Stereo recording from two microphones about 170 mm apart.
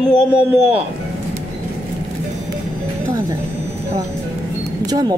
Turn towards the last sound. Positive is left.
turn(degrees=-25)  # may be behind; listen again after turning